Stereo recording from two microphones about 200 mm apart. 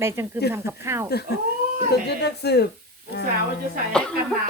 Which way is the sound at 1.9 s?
55° left (ahead or behind).